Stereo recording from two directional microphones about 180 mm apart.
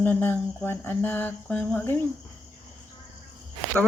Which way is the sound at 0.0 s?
10° left (ahead or behind).